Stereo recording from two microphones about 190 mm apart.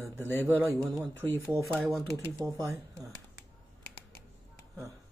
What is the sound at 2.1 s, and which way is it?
Speech, 15° right (ahead or behind).